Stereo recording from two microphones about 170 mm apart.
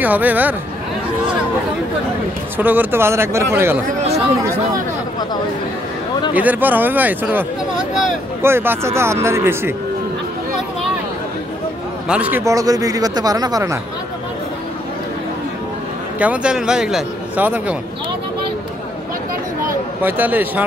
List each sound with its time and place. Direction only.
0.0 s speech: 10° right (ahead or behind)
2.5 s speech: 10° right (ahead or behind)
6.3 s speech: 10° right (ahead or behind)
8.4 s speech: 15° right (ahead or behind)
12.1 s speech: 10° right (ahead or behind)
16.2 s a man's voice: 5° right (ahead or behind)
20.0 s speech: 10° right (ahead or behind)